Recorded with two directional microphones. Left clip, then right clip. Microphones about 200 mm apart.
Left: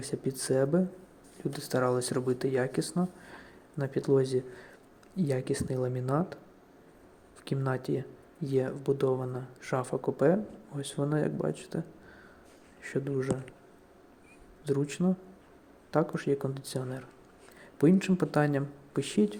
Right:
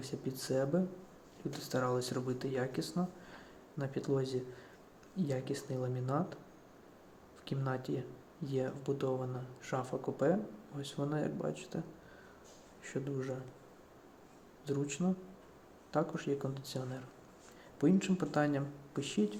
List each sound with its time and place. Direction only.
0.0 s speech: 30° left (ahead or behind)
7.4 s speech: 30° left (ahead or behind)
12.8 s speech: 30° left (ahead or behind)
14.6 s speech: 30° left (ahead or behind)